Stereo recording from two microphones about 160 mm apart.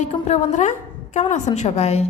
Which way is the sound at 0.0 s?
40° left (ahead or behind).